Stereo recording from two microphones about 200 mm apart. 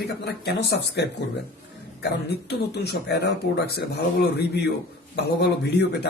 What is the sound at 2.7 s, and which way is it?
Speech, 55° left (ahead or behind).